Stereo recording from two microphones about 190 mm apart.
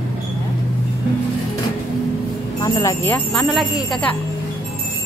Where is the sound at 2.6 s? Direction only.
20° left (ahead or behind).